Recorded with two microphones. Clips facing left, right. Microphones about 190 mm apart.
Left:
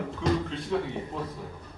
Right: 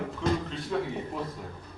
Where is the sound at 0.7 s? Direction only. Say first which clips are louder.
Left 1 dB; centre (ahead or behind).